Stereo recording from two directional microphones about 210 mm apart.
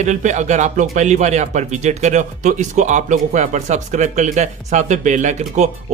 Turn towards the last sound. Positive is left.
turn(degrees=-35)  # may be behind; listen again after turning